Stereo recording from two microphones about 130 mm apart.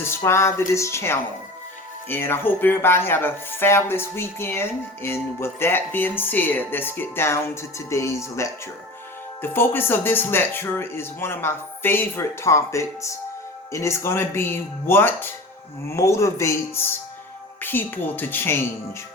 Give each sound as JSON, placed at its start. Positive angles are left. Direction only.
{"t": 0.0, "sound": "speech", "side_deg": 20}